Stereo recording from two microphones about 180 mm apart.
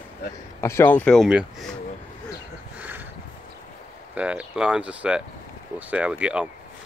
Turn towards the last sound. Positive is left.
turn(degrees=-5)  # may be behind; listen again after turning